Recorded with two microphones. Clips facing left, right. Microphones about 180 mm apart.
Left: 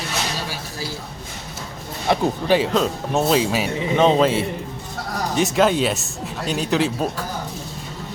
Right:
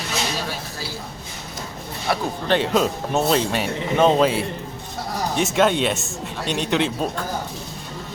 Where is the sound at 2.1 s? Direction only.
20° left (ahead or behind).